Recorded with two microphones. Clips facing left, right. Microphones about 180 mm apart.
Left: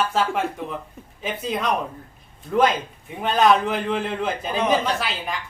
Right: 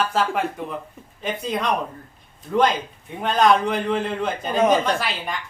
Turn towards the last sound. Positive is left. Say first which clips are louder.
# right 1 dB
turn(degrees=0)  # may be behind; listen again after turning